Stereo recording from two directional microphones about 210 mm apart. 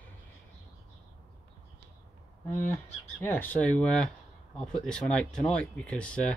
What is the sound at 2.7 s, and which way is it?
Speech, 10° left (ahead or behind).